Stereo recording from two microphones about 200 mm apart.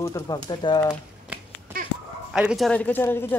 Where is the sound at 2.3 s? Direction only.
Centre (ahead or behind).